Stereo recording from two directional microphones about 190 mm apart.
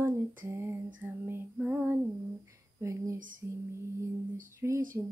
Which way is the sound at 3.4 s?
15° right (ahead or behind).